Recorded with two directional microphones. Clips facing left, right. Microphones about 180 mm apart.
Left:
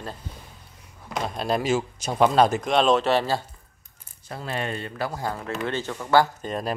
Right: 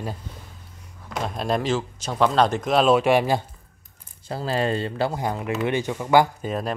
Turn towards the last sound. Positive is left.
turn(degrees=-15)  # may be behind; listen again after turning